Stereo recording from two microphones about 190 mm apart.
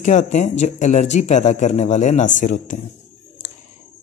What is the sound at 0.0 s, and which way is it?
A man's voice, 40° left (ahead or behind).